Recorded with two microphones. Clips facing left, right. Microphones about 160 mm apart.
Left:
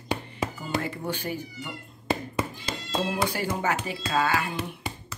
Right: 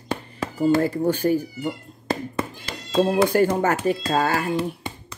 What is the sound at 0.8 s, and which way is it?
Speech, 40° right (ahead or behind).